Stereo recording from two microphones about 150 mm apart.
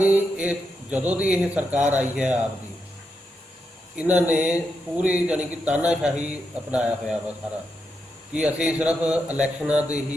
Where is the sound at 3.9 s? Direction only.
10° right (ahead or behind).